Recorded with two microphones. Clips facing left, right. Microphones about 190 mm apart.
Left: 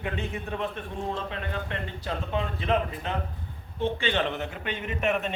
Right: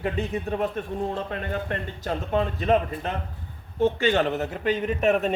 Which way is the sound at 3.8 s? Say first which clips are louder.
Right 6 dB; 45° right (ahead or behind).